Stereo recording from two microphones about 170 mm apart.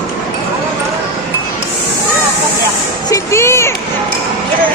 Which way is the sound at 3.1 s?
15° left (ahead or behind).